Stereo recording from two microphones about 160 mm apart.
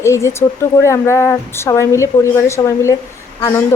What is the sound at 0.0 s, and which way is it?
A woman's voice, 15° left (ahead or behind).